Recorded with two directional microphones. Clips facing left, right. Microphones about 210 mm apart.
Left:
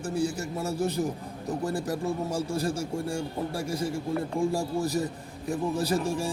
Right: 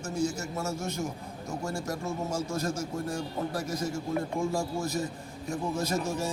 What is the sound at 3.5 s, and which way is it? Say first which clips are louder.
A man's voice: left 2 dB; 30° left (ahead or behind).